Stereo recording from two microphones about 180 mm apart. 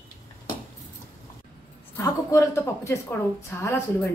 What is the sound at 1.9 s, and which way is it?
Speech, 15° left (ahead or behind).